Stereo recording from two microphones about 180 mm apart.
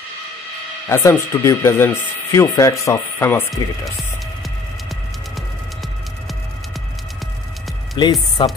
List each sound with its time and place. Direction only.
0.8 s speech: 15° left (ahead or behind)
8.0 s speech: 25° left (ahead or behind)